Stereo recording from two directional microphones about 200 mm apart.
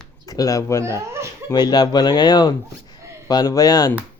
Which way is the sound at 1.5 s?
20° left (ahead or behind).